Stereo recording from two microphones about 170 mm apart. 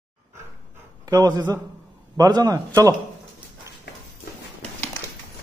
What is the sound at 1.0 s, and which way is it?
A man's voice, 20° right (ahead or behind).